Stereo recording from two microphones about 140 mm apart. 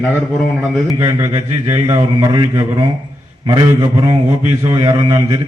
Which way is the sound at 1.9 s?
25° right (ahead or behind).